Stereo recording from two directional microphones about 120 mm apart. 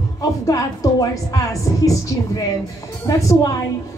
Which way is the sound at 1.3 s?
30° left (ahead or behind).